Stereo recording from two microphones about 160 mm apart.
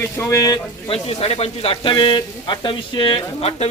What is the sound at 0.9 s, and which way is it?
Speech, 40° left (ahead or behind).